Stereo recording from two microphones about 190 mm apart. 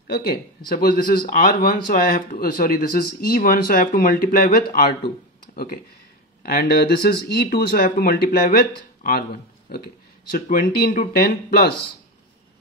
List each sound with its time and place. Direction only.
0.0 s speech: 55° left (ahead or behind)
6.4 s speech: 55° left (ahead or behind)
10.3 s speech: 50° left (ahead or behind)